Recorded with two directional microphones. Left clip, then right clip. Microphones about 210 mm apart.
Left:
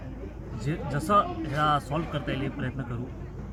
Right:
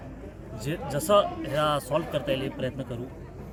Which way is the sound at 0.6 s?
15° right (ahead or behind).